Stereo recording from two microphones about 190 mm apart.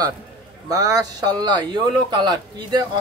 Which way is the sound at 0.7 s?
20° right (ahead or behind).